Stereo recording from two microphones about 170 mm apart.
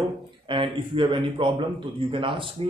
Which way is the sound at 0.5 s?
30° right (ahead or behind).